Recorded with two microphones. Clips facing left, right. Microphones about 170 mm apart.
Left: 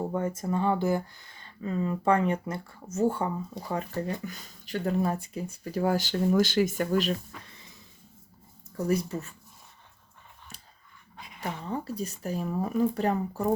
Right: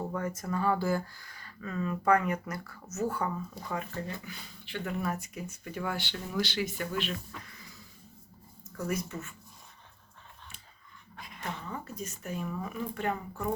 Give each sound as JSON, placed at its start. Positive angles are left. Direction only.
{"t": 0.0, "sound": "speech", "side_deg": 25}
{"t": 11.3, "sound": "speech", "side_deg": 30}